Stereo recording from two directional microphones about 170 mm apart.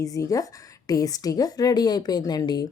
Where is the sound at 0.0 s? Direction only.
20° left (ahead or behind).